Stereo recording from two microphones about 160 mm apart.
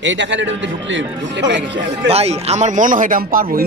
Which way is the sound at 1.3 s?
90° right.